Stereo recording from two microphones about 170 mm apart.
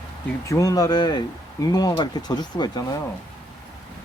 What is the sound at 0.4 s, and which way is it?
Speech, 20° left (ahead or behind).